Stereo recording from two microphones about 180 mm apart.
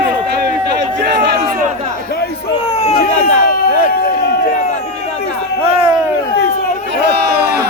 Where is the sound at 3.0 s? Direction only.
50° left (ahead or behind).